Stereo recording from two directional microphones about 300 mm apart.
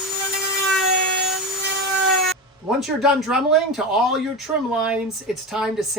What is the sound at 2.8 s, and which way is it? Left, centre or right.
Speech, centre.